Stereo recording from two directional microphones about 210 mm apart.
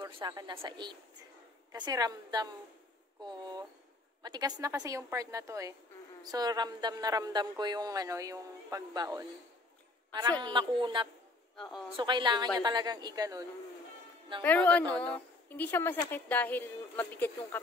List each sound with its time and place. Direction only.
0.0 s a woman's voice: 20° right (ahead or behind)
10.4 s speech: 20° right (ahead or behind)
14.4 s speech: 10° left (ahead or behind)